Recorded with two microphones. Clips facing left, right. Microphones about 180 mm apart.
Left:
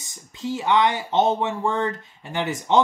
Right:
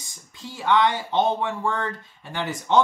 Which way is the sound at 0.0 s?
20° left (ahead or behind).